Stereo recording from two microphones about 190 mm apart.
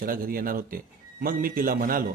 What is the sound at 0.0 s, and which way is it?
A man's voice, 50° right (ahead or behind).